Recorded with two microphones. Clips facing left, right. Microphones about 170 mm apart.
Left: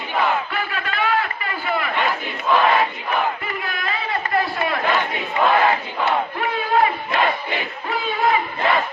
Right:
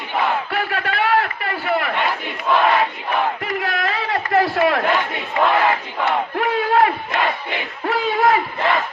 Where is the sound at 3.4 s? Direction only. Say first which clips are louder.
Right 5 dB; 85° right.